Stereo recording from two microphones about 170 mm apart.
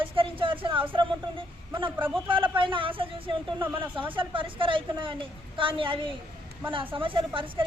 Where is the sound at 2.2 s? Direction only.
30° right (ahead or behind).